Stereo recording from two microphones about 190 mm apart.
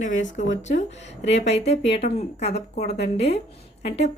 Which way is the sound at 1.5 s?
35° left (ahead or behind).